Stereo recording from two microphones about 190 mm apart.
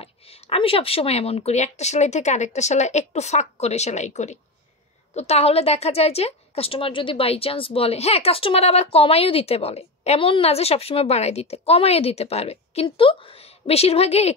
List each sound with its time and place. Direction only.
0.0 s a woman's voice: 30° left (ahead or behind)